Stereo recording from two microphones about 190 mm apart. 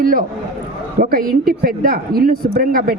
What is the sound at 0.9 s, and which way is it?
Speech, 50° right (ahead or behind).